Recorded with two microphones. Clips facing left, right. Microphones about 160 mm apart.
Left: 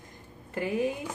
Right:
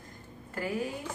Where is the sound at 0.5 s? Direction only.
20° left (ahead or behind).